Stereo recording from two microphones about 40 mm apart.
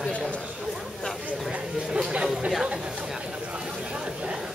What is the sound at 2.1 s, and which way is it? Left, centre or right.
Speech, right.